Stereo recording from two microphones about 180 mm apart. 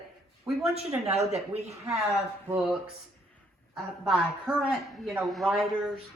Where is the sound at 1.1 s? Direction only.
35° right (ahead or behind).